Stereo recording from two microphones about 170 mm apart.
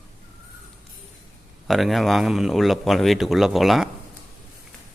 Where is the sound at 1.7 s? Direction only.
Centre (ahead or behind).